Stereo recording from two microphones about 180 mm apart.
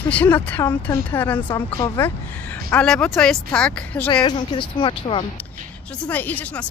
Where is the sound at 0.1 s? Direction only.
10° left (ahead or behind).